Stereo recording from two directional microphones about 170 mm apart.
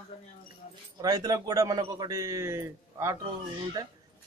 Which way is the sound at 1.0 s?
20° right (ahead or behind).